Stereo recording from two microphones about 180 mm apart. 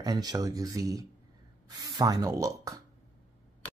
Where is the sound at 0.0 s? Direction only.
20° right (ahead or behind).